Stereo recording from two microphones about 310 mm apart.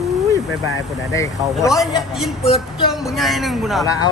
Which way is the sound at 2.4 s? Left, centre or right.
Centre.